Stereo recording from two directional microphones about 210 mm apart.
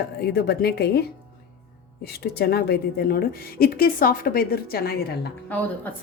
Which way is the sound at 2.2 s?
50° left (ahead or behind).